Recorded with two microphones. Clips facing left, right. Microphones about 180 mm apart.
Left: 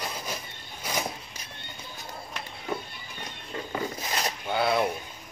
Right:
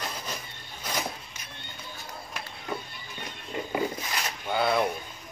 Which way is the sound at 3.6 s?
15° right (ahead or behind).